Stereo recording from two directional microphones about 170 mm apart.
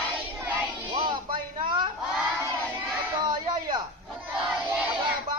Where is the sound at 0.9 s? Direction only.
30° right (ahead or behind).